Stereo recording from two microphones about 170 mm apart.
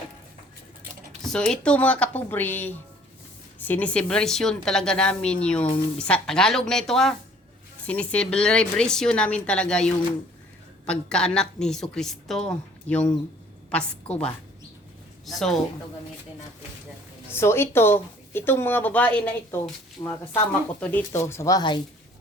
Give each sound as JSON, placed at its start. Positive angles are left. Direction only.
{"t": 1.2, "sound": "a woman's voice", "side_deg": 5}
{"t": 17.3, "sound": "speech", "side_deg": 15}